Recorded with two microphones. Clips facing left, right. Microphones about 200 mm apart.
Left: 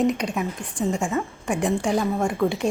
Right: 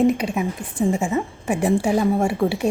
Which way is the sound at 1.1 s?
15° right (ahead or behind).